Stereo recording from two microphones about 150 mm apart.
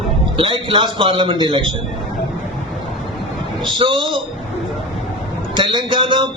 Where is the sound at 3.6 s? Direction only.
30° right (ahead or behind).